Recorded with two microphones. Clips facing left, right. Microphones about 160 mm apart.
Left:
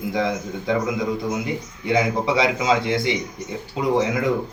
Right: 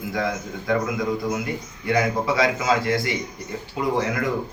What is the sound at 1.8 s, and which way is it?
Speech, 20° left (ahead or behind).